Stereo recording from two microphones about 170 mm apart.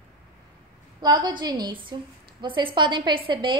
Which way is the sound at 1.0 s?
25° right (ahead or behind).